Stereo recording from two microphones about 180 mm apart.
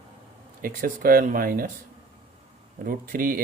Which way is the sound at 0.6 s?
50° right (ahead or behind).